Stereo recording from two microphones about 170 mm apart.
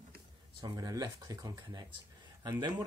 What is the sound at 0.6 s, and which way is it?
Speech, 20° right (ahead or behind).